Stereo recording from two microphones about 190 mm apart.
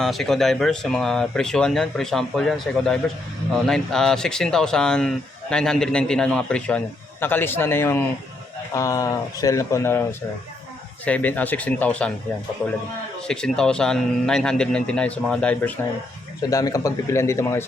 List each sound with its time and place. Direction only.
0.0 s speech: centre (ahead or behind)
13.2 s speech: 5° left (ahead or behind)